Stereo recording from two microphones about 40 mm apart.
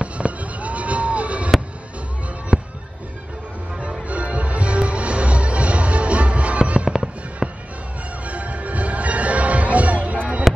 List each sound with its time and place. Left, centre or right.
0.0 s fireworks: right
2.5 s fireworks: centre
4.1 s music: right
7.4 s music: centre
8.3 s music: right